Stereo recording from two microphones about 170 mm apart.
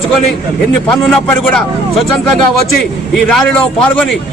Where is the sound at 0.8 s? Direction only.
5° left (ahead or behind).